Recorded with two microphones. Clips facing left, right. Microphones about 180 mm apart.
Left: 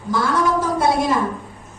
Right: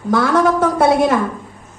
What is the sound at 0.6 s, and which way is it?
Speech, 60° right (ahead or behind).